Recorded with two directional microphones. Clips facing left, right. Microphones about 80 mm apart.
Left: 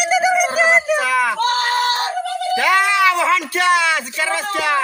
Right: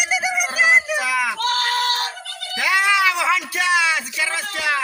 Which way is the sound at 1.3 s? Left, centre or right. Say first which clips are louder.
Left 4 dB; left.